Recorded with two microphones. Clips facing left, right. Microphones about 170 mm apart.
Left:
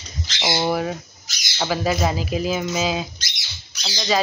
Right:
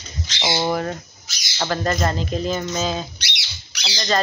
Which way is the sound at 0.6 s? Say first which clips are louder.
Left 1 dB; 5° left (ahead or behind).